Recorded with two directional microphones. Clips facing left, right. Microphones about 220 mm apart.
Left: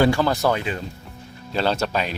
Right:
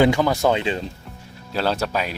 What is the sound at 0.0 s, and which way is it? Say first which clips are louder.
Speech: right 1 dB; 20° right (ahead or behind).